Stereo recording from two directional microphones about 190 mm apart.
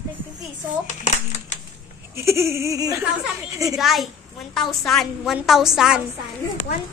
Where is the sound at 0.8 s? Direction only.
35° left (ahead or behind).